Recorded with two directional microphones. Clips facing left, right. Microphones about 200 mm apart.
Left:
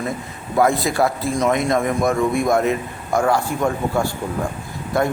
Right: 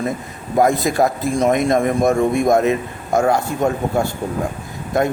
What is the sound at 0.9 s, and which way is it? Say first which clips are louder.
Speech: right 2 dB; 45° right (ahead or behind).